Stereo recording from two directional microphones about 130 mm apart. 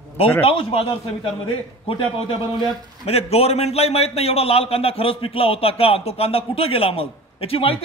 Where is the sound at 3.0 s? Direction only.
50° left (ahead or behind).